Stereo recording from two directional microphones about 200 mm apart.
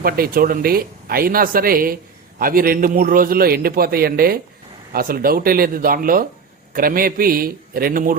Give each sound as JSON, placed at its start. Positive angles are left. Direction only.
{"t": 0.0, "sound": "speech", "side_deg": -45}